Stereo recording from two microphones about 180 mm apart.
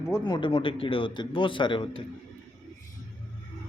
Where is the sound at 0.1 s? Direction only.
25° left (ahead or behind).